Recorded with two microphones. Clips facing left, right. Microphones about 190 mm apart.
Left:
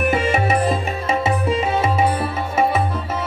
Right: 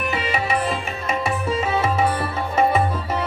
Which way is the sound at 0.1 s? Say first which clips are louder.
Left 5 dB; 45° left (ahead or behind).